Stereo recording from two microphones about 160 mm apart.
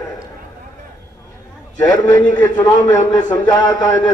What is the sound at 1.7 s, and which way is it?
A man's voice, 20° left (ahead or behind).